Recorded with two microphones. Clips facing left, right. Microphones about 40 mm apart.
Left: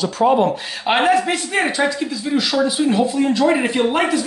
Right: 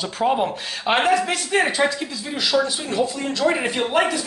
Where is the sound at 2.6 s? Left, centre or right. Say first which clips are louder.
Left 6 dB; centre.